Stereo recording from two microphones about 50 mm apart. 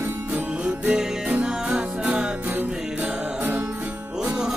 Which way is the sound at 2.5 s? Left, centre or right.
Right.